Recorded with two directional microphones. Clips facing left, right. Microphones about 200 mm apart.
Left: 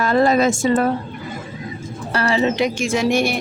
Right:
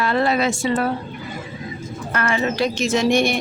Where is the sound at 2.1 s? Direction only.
30° left (ahead or behind); by 3.3 s 5° left (ahead or behind).